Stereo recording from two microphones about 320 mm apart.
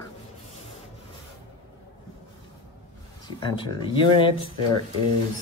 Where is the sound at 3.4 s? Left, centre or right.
Centre.